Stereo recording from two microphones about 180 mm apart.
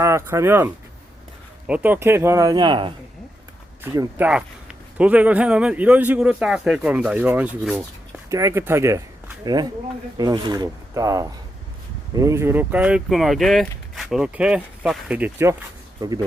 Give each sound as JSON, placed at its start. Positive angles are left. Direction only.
{"t": 0.0, "sound": "speech", "side_deg": -15}
{"t": 3.8, "sound": "speech", "side_deg": -15}
{"t": 4.3, "sound": "speech", "side_deg": -5}
{"t": 16.0, "sound": "speech", "side_deg": -20}